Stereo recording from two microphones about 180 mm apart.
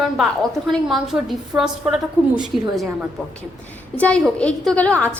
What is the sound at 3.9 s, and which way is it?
A woman's voice, 5° left (ahead or behind).